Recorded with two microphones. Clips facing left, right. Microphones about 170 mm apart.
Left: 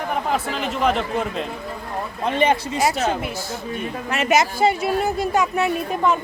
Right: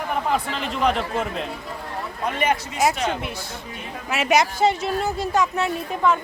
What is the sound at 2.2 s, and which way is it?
Speech, 30° left (ahead or behind).